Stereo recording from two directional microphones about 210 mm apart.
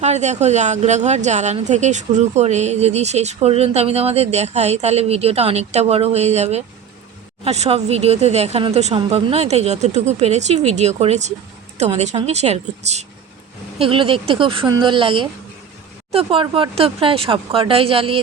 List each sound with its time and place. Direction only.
0.0 s speech: 35° right (ahead or behind)